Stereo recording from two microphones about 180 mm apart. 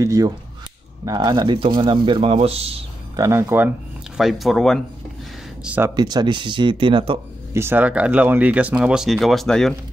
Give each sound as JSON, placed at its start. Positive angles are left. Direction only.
{"t": 0.0, "sound": "speech", "side_deg": -20}
{"t": 3.2, "sound": "speech", "side_deg": -15}
{"t": 4.2, "sound": "speech", "side_deg": 0}
{"t": 5.9, "sound": "speech", "side_deg": -20}
{"t": 7.5, "sound": "speech", "side_deg": -10}